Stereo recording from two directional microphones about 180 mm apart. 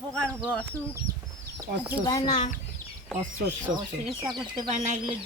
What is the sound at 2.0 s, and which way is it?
Speech, 20° left (ahead or behind).